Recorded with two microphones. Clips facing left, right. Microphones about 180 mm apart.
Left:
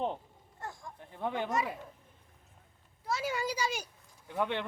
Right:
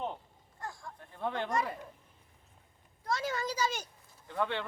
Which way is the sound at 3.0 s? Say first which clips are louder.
Even; 5° left (ahead or behind).